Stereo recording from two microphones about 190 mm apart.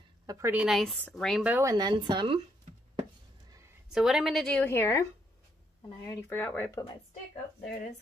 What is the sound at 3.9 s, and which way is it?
A woman's voice, centre (ahead or behind).